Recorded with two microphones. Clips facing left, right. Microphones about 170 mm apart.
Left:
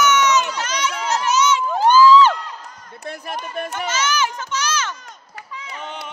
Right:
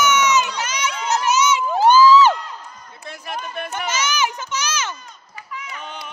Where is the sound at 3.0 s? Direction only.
45° left (ahead or behind).